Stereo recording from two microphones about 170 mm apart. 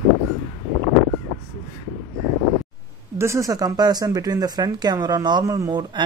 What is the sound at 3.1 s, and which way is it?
Speech, 15° right (ahead or behind).